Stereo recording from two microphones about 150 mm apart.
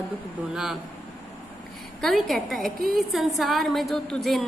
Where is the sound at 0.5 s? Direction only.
5° right (ahead or behind).